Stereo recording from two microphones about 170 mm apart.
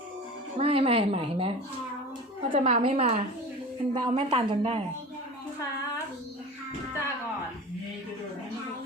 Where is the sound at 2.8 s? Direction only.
35° right (ahead or behind).